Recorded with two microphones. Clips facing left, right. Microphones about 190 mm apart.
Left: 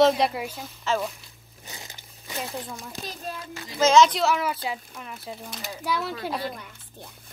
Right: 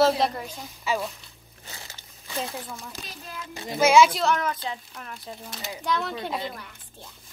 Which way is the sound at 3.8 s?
10° right (ahead or behind).